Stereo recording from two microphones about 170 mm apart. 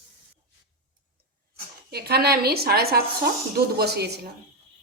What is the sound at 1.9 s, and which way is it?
A woman's voice, 70° right (ahead or behind).